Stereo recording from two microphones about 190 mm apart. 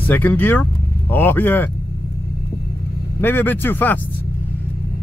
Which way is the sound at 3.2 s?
10° left (ahead or behind).